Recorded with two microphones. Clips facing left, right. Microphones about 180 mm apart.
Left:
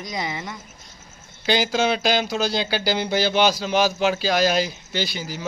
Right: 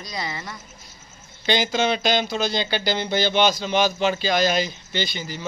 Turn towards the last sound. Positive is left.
turn(degrees=5)  # may be behind; listen again after turning